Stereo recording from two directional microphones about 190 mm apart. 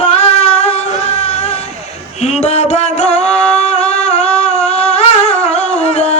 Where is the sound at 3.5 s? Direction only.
35° left (ahead or behind).